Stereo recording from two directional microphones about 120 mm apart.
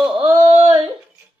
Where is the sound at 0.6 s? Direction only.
50° right (ahead or behind).